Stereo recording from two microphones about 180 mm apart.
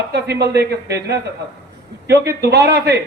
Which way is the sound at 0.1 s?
65° right (ahead or behind).